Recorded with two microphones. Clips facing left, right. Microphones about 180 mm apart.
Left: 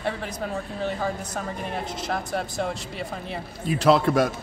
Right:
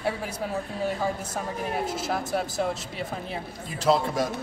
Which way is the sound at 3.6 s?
70° left (ahead or behind).